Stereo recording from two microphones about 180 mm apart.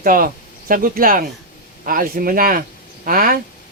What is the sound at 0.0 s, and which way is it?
Speech, 50° right (ahead or behind).